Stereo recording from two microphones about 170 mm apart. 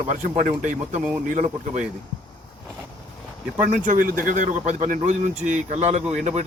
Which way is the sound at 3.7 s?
50° right (ahead or behind).